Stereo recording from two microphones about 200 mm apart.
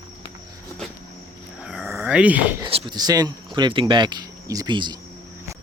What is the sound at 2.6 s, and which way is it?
Speech, 25° right (ahead or behind).